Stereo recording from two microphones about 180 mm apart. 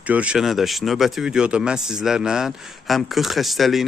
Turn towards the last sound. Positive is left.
turn(degrees=0)  # may be behind; listen again after turning